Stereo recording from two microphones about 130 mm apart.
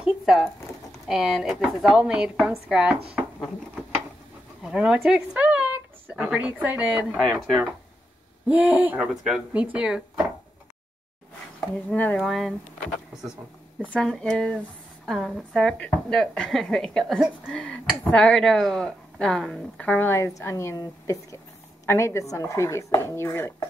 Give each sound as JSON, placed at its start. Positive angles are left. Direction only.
{"t": 0.0, "sound": "a sound", "side_deg": -5}
{"t": 1.0, "sound": "a woman's voice", "side_deg": -5}
{"t": 4.6, "sound": "a woman's voice", "side_deg": -5}
{"t": 11.9, "sound": "speech", "side_deg": 10}
{"t": 12.2, "sound": "speech", "side_deg": 0}
{"t": 13.7, "sound": "a woman's voice", "side_deg": 10}